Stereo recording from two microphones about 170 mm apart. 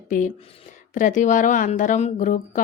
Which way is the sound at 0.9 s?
50° left (ahead or behind).